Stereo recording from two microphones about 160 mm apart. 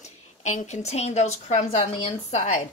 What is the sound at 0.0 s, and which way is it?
A woman's voice, 45° left (ahead or behind).